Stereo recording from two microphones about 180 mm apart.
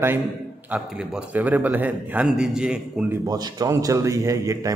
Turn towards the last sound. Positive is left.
turn(degrees=-20)  # may be behind; listen again after turning